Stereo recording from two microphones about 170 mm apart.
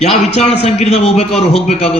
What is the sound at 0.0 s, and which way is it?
A man's voice, 40° left (ahead or behind).